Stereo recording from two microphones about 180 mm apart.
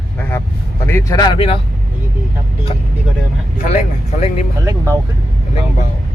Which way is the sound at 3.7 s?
40° left (ahead or behind).